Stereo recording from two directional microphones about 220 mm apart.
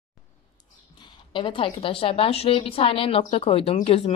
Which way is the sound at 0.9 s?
20° left (ahead or behind).